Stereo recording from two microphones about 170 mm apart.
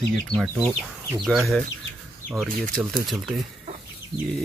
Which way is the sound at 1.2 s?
Centre (ahead or behind).